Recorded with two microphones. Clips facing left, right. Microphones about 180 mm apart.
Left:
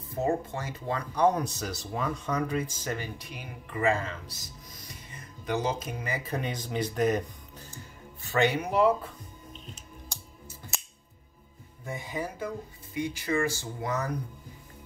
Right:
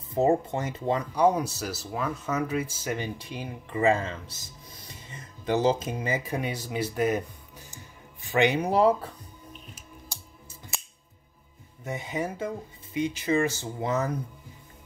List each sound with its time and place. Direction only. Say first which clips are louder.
0.1 s speech: right 6 dB; 25° right (ahead or behind)
1.1 s speech: even; 10° right (ahead or behind)
3.0 s speech: right 5 dB; 25° right (ahead or behind)
8.5 s speech: right 3 dB; 35° right (ahead or behind)
11.8 s speech: right 3 dB; 20° right (ahead or behind)